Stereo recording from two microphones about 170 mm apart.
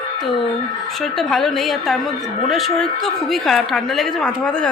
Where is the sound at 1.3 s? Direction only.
Centre (ahead or behind).